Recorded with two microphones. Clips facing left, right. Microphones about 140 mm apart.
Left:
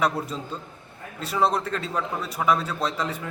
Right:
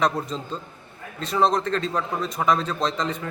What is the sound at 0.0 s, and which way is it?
A man's voice, 10° left (ahead or behind).